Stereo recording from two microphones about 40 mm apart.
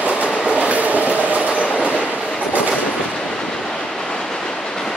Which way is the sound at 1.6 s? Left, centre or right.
Left.